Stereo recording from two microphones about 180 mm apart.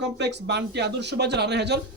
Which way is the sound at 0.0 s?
75° right (ahead or behind).